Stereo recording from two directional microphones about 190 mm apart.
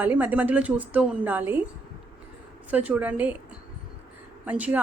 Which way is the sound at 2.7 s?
10° right (ahead or behind).